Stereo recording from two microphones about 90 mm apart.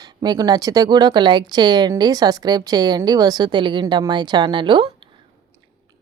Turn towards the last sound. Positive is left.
turn(degrees=-60)  # may be behind; listen again after turning